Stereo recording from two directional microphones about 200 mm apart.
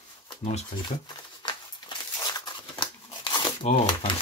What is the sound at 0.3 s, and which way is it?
Speech, 30° left (ahead or behind).